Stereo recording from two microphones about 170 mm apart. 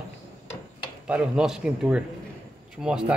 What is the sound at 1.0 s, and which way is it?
A man's voice, 5° right (ahead or behind).